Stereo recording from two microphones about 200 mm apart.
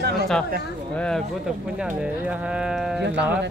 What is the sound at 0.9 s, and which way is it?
Speech, 5° left (ahead or behind).